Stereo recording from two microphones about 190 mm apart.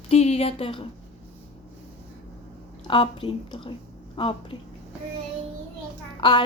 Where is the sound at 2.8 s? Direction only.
25° left (ahead or behind).